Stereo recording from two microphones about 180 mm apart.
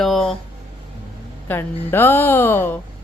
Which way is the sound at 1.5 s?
10° left (ahead or behind).